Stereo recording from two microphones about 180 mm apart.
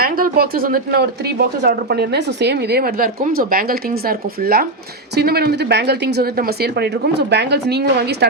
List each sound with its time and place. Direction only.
0.0 s speech: 55° right (ahead or behind)